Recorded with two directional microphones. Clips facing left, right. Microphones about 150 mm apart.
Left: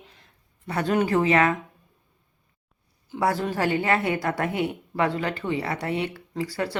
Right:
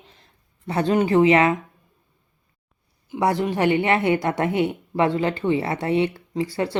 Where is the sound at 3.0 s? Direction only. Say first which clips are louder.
Right 3 dB; 20° right (ahead or behind).